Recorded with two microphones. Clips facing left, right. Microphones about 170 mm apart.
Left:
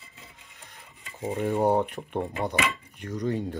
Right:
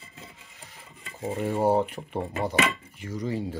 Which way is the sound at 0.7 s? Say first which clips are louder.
Right 2 dB; centre (ahead or behind).